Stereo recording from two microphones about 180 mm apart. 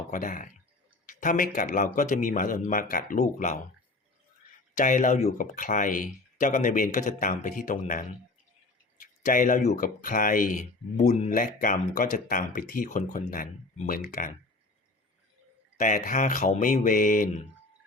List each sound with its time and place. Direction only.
0.1 s speech: 45° left (ahead or behind)
4.7 s speech: 45° left (ahead or behind)
15.8 s speech: 45° left (ahead or behind)